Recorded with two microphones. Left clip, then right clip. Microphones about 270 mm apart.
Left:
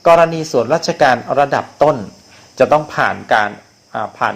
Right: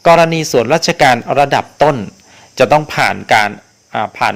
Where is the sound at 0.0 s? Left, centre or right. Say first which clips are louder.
Right 1 dB; right.